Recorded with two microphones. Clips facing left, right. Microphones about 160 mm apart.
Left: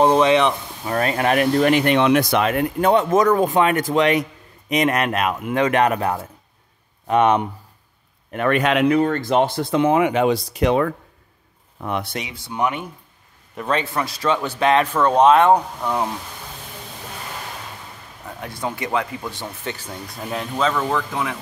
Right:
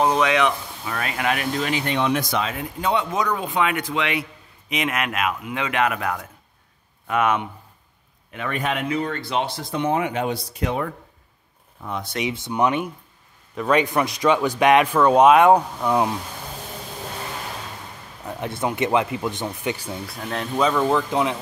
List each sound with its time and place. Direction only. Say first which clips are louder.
0.0 s speech: left 4 dB; 30° left (ahead or behind)
8.5 s speech: left 8 dB; 90° left
9.0 s speech: left 7 dB; 45° left (ahead or behind)
9.7 s speech: left 4 dB; 90° left
11.8 s speech: left 5 dB; 70° left (ahead or behind)
12.3 s speech: right 4 dB; 20° right (ahead or behind)
18.4 s speech: right 4 dB; 20° right (ahead or behind)
20.2 s speech: left 2 dB; 5° left (ahead or behind)
20.5 s speech: right 2 dB; 15° right (ahead or behind)